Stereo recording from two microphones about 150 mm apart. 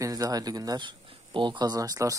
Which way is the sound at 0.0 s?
25° right (ahead or behind).